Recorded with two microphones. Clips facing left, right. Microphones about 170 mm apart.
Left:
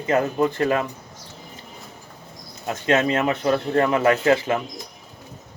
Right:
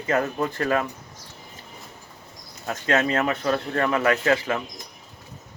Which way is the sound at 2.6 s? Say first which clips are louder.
Left 3 dB; 20° left (ahead or behind).